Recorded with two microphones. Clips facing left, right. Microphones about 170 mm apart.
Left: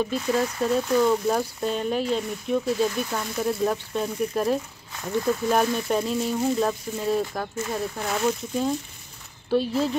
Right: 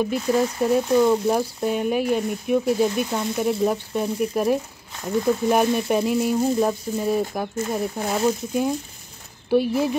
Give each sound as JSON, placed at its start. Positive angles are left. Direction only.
{"t": 0.0, "sound": "speech", "side_deg": -10}
{"t": 8.0, "sound": "speech", "side_deg": -35}
{"t": 9.5, "sound": "speech", "side_deg": -15}